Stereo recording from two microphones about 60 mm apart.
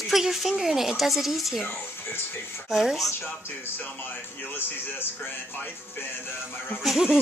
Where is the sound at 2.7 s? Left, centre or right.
Centre.